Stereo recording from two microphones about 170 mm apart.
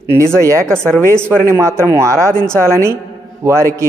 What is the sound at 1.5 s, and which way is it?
Speech, 15° right (ahead or behind).